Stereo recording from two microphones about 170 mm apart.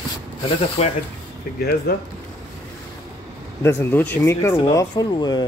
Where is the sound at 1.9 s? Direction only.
70° left (ahead or behind).